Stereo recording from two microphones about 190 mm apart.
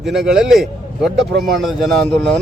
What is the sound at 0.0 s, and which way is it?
A man's voice, centre (ahead or behind).